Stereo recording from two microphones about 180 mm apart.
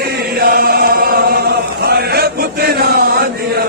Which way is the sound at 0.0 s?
55° right (ahead or behind).